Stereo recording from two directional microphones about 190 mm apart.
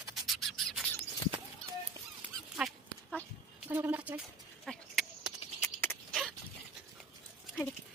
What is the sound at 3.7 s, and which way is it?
Speech, 10° right (ahead or behind).